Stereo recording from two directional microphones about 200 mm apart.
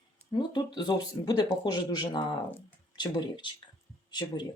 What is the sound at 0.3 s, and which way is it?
Speech, 20° left (ahead or behind).